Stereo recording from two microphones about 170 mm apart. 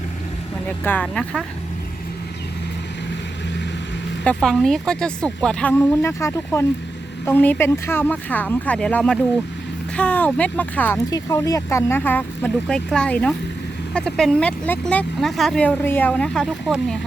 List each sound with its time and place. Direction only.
0.9 s speech: 5° left (ahead or behind)
4.2 s speech: 5° left (ahead or behind)
5.7 s speech: 15° left (ahead or behind)